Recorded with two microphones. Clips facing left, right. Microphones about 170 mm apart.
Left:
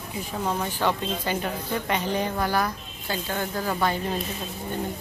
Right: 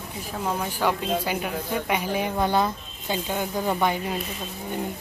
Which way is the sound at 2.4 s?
20° right (ahead or behind).